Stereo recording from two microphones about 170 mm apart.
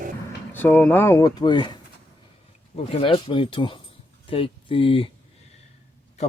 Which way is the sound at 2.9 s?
35° left (ahead or behind).